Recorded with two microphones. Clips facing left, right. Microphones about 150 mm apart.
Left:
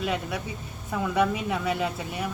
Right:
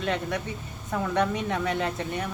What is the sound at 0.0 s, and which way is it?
Speech, 10° left (ahead or behind).